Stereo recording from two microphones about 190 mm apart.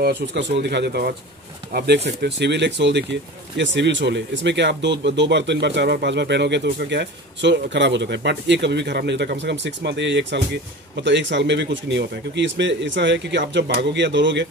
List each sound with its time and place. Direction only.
0.0 s speech: 65° right (ahead or behind)
2.2 s speech: 65° right (ahead or behind)